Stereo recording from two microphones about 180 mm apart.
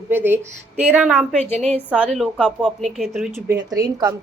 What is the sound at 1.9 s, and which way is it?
A woman's voice, 5° right (ahead or behind).